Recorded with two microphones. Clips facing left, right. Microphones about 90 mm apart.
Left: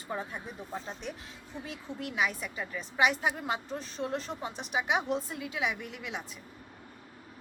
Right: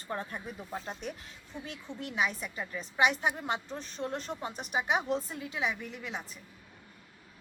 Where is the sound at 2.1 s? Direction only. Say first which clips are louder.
Even; centre (ahead or behind).